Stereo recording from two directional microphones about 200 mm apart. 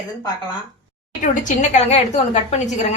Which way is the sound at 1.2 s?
40° left (ahead or behind).